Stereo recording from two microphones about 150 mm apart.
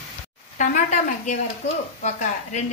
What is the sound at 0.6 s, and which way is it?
A woman's voice, 55° left (ahead or behind).